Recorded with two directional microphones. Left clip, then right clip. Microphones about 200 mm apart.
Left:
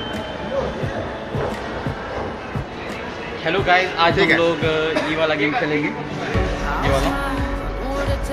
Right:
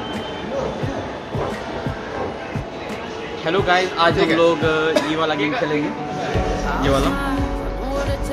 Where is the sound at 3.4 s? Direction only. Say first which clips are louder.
Left 1 dB; 10° right (ahead or behind).